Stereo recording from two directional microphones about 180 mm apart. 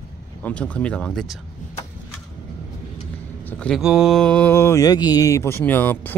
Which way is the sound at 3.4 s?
10° left (ahead or behind).